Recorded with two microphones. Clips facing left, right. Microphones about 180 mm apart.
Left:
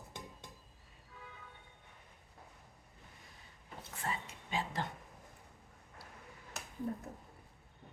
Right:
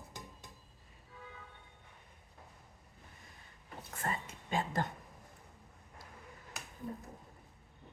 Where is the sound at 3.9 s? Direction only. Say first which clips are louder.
Right 2 dB; 50° right (ahead or behind).